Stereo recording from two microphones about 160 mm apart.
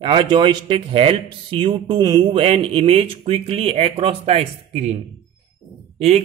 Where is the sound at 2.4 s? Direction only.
35° right (ahead or behind).